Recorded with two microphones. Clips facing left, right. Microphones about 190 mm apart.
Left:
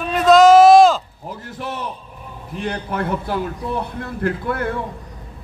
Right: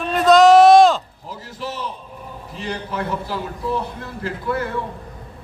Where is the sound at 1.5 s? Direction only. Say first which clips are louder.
Even; 55° left (ahead or behind).